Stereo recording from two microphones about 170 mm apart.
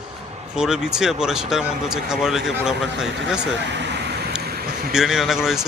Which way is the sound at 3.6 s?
90° right.